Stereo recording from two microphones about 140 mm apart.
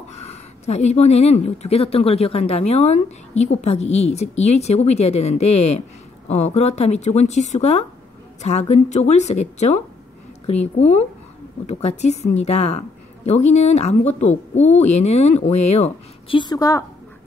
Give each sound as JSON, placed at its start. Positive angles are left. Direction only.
{"t": 0.1, "sound": "speech", "side_deg": 50}
{"t": 16.3, "sound": "a woman's voice", "side_deg": 30}